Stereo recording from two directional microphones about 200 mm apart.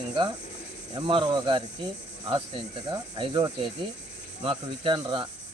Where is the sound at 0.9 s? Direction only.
25° right (ahead or behind).